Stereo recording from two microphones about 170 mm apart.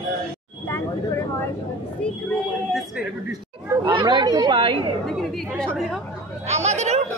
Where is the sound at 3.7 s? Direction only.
25° right (ahead or behind).